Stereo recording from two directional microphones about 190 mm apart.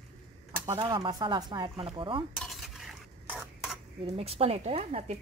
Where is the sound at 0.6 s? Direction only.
20° right (ahead or behind).